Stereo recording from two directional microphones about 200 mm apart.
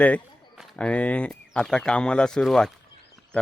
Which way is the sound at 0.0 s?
5° left (ahead or behind).